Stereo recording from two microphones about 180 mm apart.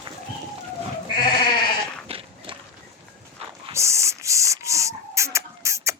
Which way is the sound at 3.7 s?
15° right (ahead or behind).